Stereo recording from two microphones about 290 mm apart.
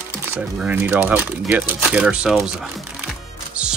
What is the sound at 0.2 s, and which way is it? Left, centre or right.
Speech, centre.